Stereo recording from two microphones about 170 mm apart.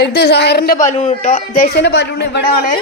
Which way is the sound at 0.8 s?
45° left (ahead or behind).